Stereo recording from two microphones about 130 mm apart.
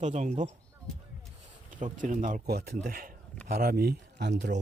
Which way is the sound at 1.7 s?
90° right.